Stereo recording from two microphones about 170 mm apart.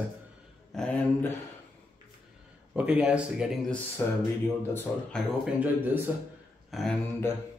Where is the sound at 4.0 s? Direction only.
15° left (ahead or behind).